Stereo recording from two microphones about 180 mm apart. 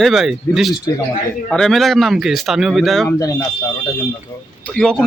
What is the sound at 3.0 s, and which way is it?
Speech, 20° left (ahead or behind).